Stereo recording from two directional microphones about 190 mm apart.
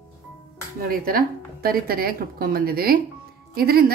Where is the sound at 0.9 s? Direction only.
50° right (ahead or behind).